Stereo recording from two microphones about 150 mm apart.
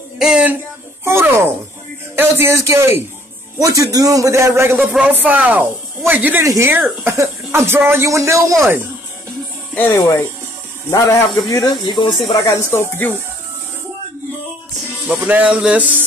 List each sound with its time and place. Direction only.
0.2 s a man's voice: 5° right (ahead or behind)
9.8 s speech: 25° left (ahead or behind)
12.7 s speech: 15° left (ahead or behind)
15.0 s speech: 10° right (ahead or behind)